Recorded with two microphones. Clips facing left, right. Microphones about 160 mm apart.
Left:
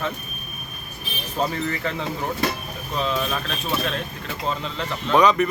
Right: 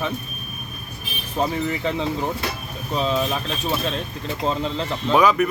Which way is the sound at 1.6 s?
20° right (ahead or behind).